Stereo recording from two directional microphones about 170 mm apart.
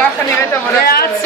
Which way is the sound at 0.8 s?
65° left (ahead or behind).